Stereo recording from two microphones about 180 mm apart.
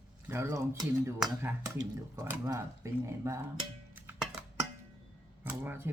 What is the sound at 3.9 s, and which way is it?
Music, 10° right (ahead or behind).